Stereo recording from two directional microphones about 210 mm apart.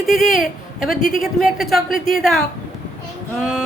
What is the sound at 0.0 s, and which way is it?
Speech, centre (ahead or behind).